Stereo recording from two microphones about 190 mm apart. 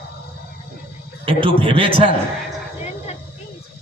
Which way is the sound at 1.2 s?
30° right (ahead or behind).